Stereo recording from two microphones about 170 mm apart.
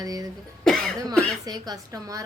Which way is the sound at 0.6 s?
5° left (ahead or behind).